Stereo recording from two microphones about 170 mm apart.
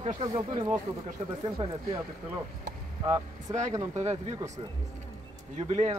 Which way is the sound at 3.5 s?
45° right (ahead or behind).